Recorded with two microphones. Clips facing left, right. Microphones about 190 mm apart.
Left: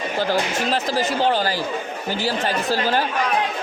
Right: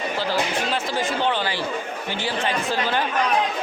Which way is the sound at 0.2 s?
45° left (ahead or behind).